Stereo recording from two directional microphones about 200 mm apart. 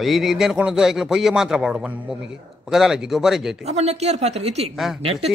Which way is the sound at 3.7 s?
35° right (ahead or behind).